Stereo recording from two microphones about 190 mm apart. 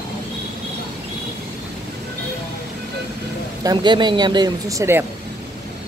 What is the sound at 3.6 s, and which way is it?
Speech, 20° right (ahead or behind).